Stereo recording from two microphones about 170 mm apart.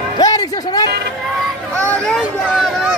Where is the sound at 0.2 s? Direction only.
25° left (ahead or behind).